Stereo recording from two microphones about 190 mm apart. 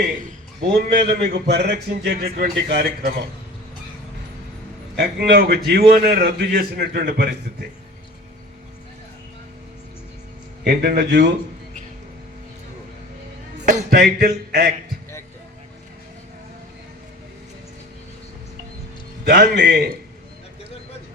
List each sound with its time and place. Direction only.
0.8 s a man's voice: 55° right (ahead or behind)
4.9 s a man's voice: 60° right (ahead or behind)
10.6 s a man's voice: 60° right (ahead or behind)
13.7 s music: 40° right (ahead or behind)
14.0 s a sound: 50° right (ahead or behind)
19.3 s a sound: 55° right (ahead or behind)